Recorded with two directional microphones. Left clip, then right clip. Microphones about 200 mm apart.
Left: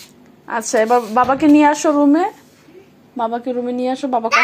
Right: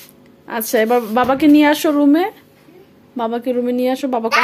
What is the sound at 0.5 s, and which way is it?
A woman's voice, 20° right (ahead or behind).